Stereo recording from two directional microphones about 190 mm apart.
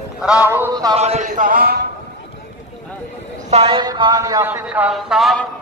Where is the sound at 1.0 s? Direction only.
35° right (ahead or behind).